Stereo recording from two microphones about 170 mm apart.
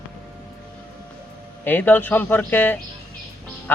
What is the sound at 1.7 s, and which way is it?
A man's voice, 10° left (ahead or behind).